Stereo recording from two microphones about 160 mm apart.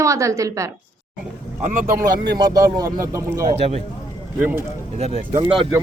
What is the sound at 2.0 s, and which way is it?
Speech, 90° right.